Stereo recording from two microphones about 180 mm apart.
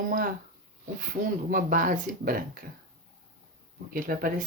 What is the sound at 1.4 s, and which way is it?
Speech, 50° right (ahead or behind).